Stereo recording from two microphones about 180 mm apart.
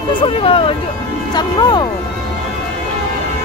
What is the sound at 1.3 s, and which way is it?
Music, 25° left (ahead or behind).